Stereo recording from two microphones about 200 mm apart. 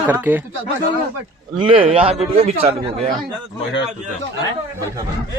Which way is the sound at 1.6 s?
25° right (ahead or behind).